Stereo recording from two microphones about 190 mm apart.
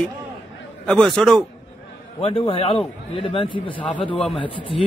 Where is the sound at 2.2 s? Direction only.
30° left (ahead or behind).